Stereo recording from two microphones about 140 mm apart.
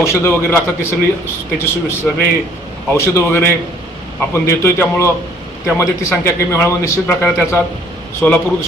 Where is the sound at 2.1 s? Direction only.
Centre (ahead or behind).